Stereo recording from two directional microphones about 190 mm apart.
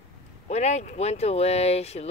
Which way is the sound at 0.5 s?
35° left (ahead or behind).